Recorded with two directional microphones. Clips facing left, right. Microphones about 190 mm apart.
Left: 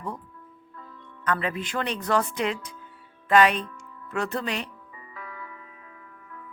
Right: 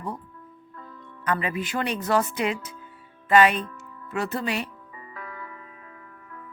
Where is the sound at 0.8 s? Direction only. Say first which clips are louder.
Right 2 dB; 45° right (ahead or behind).